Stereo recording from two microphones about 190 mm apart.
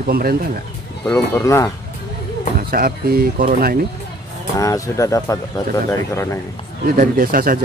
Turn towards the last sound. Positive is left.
turn(degrees=-50)  # may be behind; listen again after turning